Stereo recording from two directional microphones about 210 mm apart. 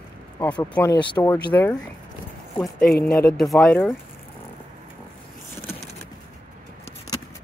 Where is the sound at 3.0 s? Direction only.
45° left (ahead or behind).